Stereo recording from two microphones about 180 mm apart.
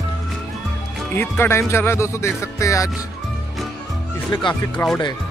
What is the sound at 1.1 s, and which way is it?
Speech, 10° left (ahead or behind).